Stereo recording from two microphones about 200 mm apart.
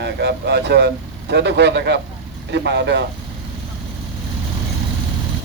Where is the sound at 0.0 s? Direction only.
55° right (ahead or behind).